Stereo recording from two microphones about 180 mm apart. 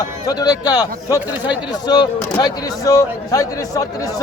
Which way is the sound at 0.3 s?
20° left (ahead or behind).